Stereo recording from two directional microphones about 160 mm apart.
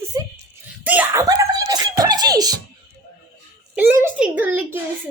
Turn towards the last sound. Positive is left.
turn(degrees=-10)  # may be behind; listen again after turning